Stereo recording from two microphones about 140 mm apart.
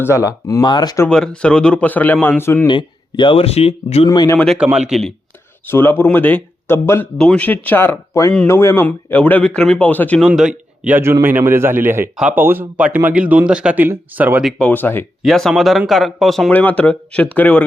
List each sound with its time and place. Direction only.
0.0 s speech: 20° left (ahead or behind)
1.0 s speech: 5° left (ahead or behind)
2.6 s speech: 35° left (ahead or behind)
4.1 s speech: 30° left (ahead or behind)
4.5 s speech: 5° right (ahead or behind)
5.6 s speech: 15° left (ahead or behind)
10.2 s speech: 5° right (ahead or behind)
14.7 s speech: 15° left (ahead or behind)
15.2 s speech: centre (ahead or behind)
16.5 s speech: 10° left (ahead or behind)